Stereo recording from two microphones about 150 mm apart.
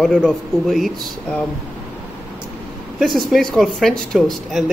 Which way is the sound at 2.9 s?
Centre (ahead or behind).